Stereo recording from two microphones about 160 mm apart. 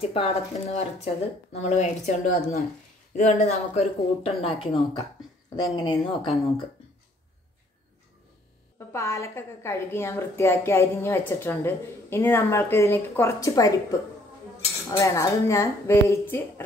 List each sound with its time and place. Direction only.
0.0 s a woman's voice: 40° left (ahead or behind)
5.9 s speech: 35° left (ahead or behind)
8.7 s a woman's voice: 20° left (ahead or behind)
14.9 s a woman's voice: 20° left (ahead or behind)